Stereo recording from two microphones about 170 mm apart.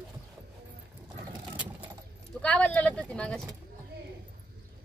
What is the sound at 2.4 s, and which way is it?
Speech, 5° left (ahead or behind).